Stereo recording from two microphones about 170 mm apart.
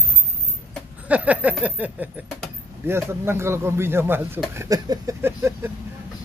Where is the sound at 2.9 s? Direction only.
15° right (ahead or behind).